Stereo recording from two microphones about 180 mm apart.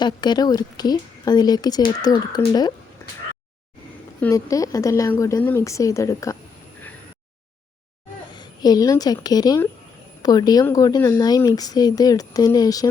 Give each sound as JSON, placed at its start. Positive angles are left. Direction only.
{"t": 0.0, "sound": "a woman's voice", "side_deg": 25}
{"t": 4.2, "sound": "a woman's voice", "side_deg": 15}
{"t": 8.3, "sound": "a woman's voice", "side_deg": 25}